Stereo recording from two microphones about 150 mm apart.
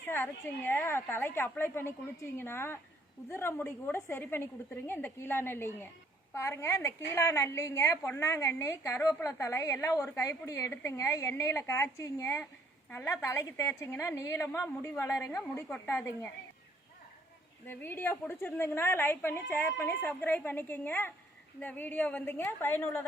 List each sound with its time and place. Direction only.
0.0 s a woman's voice: 15° left (ahead or behind)
17.7 s a woman's voice: 15° left (ahead or behind)